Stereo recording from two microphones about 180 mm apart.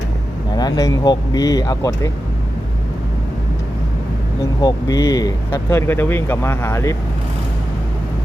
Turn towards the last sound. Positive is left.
turn(degrees=15)  # may be behind; listen again after turning